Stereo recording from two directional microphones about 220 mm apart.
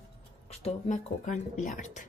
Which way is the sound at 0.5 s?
30° left (ahead or behind).